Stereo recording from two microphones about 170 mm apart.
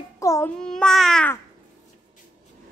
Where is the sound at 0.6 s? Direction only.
5° left (ahead or behind).